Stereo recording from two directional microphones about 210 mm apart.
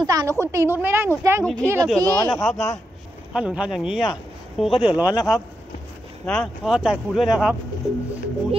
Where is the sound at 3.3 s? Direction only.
5° right (ahead or behind).